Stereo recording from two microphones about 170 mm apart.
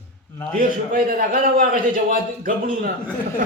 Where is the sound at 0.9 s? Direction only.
55° right (ahead or behind).